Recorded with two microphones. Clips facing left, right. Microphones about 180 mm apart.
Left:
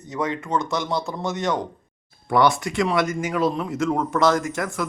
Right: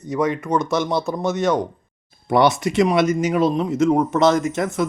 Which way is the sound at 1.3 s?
20° left (ahead or behind).